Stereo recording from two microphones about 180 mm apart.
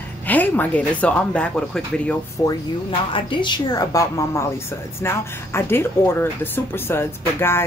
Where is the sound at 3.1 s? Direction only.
25° left (ahead or behind).